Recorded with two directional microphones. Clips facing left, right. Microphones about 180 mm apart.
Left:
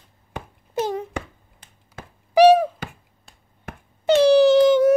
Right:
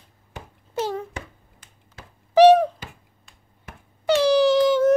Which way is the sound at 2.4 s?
10° left (ahead or behind).